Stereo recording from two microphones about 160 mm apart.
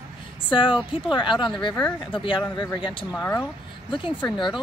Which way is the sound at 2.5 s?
30° left (ahead or behind).